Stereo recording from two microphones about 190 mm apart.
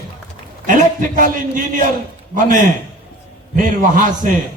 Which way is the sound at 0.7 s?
45° right (ahead or behind).